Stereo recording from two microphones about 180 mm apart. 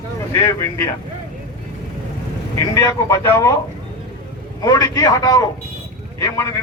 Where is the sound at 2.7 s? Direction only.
15° left (ahead or behind).